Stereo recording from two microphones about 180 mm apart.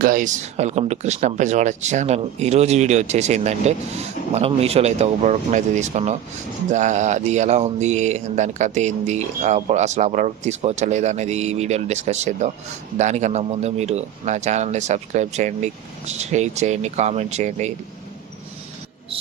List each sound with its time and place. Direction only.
0.0 s speech: 45° right (ahead or behind)